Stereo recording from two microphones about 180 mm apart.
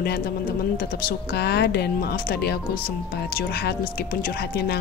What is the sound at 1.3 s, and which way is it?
Speech, 65° left (ahead or behind).